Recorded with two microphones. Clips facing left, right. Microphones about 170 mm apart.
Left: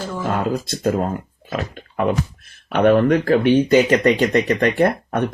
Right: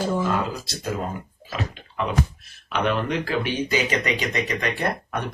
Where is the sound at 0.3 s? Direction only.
50° left (ahead or behind).